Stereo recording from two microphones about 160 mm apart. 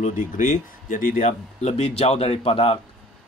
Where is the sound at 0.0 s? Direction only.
55° left (ahead or behind).